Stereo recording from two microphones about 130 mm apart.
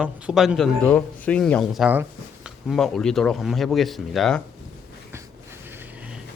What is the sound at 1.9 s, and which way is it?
Speech, 15° right (ahead or behind).